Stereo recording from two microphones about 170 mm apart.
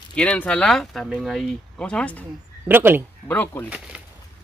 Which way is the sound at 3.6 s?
10° right (ahead or behind).